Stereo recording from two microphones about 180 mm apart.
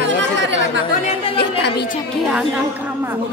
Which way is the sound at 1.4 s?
65° left (ahead or behind).